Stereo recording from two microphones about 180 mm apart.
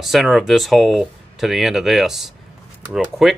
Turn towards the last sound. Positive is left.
turn(degrees=-5)  # may be behind; listen again after turning